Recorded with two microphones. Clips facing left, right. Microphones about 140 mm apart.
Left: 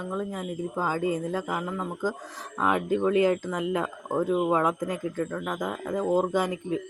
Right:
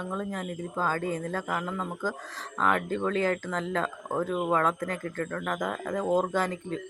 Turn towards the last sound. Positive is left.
turn(degrees=10)  # may be behind; listen again after turning